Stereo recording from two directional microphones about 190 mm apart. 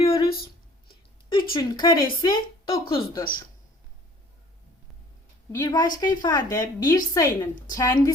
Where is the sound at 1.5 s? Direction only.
20° left (ahead or behind).